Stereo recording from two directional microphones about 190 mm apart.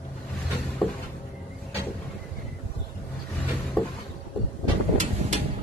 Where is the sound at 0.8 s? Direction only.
Centre (ahead or behind).